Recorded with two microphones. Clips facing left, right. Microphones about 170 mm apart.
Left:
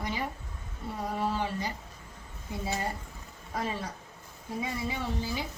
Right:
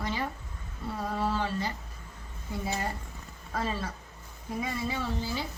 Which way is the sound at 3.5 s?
20° left (ahead or behind).